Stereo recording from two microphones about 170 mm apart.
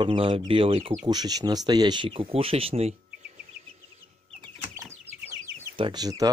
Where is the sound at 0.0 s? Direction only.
30° right (ahead or behind).